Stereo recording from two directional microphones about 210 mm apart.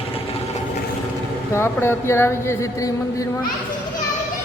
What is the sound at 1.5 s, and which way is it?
Speech, 10° left (ahead or behind).